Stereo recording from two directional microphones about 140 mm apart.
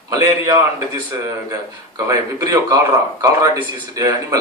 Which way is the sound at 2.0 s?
25° right (ahead or behind).